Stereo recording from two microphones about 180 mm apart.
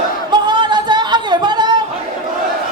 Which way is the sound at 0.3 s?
25° right (ahead or behind).